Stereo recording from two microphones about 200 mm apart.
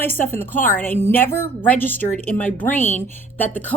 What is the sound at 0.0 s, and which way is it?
A woman's voice, 10° left (ahead or behind).